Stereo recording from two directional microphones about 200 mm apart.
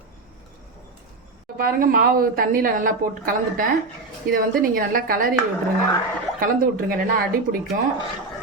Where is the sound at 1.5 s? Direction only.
45° right (ahead or behind).